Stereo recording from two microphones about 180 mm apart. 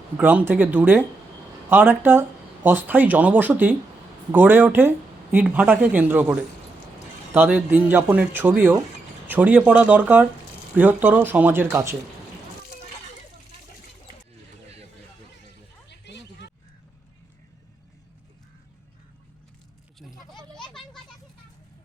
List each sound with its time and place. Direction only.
0.2 s speech: 10° right (ahead or behind)
7.4 s speech: 10° right (ahead or behind)
15.9 s a sound: 70° left (ahead or behind)
20.0 s children playing: centre (ahead or behind)